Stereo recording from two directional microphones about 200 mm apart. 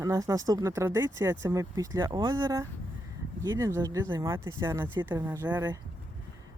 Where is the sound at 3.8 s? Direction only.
15° right (ahead or behind).